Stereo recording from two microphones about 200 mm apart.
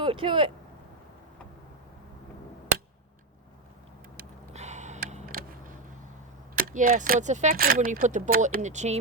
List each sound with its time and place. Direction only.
0.0 s speech: 25° right (ahead or behind)
4.2 s gasp: 35° right (ahead or behind)
5.0 s a sound: 40° right (ahead or behind)
6.6 s speech: 45° right (ahead or behind)